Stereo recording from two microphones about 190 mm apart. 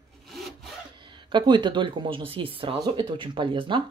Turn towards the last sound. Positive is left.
turn(degrees=-25)  # may be behind; listen again after turning